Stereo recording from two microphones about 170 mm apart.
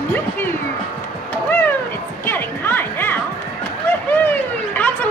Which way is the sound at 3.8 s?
10° left (ahead or behind).